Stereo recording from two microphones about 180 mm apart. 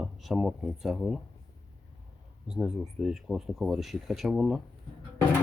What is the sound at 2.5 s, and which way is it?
Speech, 5° right (ahead or behind).